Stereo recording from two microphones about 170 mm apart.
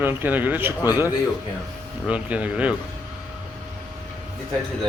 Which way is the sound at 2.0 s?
10° right (ahead or behind).